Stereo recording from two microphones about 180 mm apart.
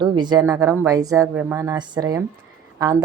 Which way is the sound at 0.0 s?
25° right (ahead or behind).